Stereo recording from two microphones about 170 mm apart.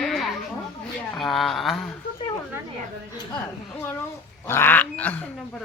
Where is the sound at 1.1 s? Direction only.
Centre (ahead or behind).